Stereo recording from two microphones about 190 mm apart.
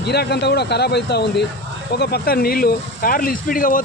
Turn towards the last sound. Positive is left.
turn(degrees=45)  # may be behind; listen again after turning